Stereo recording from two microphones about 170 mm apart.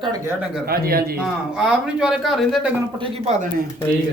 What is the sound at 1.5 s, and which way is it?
Speech, 5° right (ahead or behind).